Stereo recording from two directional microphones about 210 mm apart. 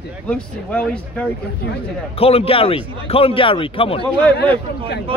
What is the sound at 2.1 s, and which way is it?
A man's voice, 30° left (ahead or behind).